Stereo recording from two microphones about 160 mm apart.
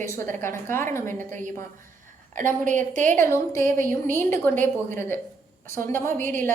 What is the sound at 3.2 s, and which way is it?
A woman's voice, 15° left (ahead or behind).